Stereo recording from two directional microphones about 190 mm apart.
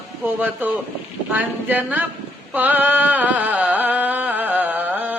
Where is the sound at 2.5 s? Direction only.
10° right (ahead or behind).